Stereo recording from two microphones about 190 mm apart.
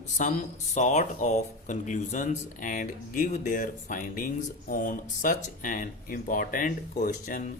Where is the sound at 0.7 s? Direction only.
40° left (ahead or behind).